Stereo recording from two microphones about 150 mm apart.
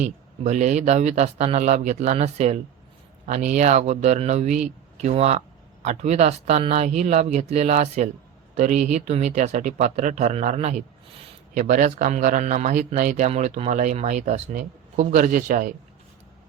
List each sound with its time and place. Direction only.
0.0 s a man's voice: 55° right (ahead or behind)